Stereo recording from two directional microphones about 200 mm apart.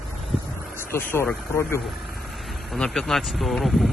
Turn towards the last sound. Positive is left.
turn(degrees=0)  # may be behind; listen again after turning